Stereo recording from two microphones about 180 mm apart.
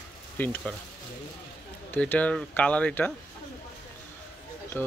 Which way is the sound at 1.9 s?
10° left (ahead or behind).